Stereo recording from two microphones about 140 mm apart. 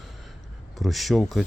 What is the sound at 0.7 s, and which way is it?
Speech, centre (ahead or behind).